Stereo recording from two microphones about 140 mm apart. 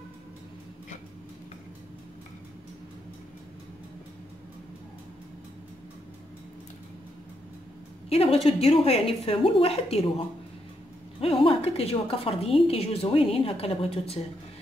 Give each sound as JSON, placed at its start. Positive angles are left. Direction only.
{"t": 8.1, "sound": "a woman's voice", "side_deg": 45}
{"t": 11.1, "sound": "a sound", "side_deg": 45}
{"t": 12.6, "sound": "a woman's voice", "side_deg": 45}